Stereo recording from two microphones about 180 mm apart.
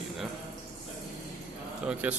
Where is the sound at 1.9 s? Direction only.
5° right (ahead or behind).